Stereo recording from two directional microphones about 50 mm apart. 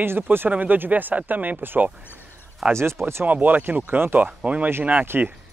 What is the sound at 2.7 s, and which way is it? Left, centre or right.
Speech, right.